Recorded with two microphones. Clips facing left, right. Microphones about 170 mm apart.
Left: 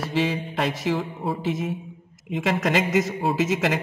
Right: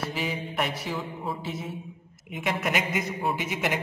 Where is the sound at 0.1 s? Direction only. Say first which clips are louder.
Left 7 dB; 90° left.